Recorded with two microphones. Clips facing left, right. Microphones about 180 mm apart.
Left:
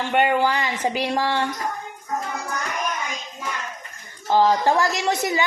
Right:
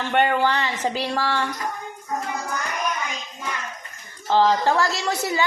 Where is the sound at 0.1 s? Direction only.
10° left (ahead or behind).